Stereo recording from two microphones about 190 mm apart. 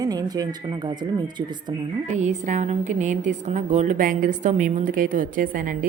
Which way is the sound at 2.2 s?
40° right (ahead or behind).